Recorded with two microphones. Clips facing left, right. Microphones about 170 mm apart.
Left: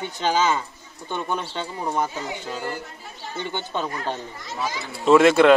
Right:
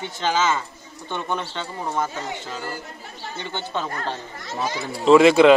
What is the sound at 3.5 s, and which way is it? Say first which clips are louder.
Speech: even; 15° left (ahead or behind).